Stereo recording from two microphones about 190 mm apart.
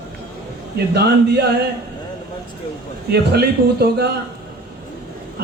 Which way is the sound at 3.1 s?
55° right (ahead or behind).